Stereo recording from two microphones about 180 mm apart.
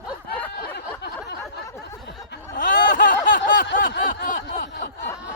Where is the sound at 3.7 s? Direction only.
70° left (ahead or behind).